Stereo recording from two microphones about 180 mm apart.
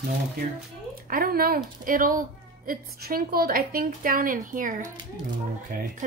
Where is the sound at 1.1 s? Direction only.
55° right (ahead or behind).